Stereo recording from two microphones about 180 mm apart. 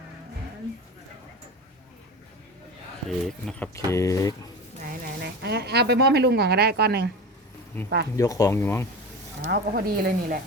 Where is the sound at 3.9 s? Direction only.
15° left (ahead or behind).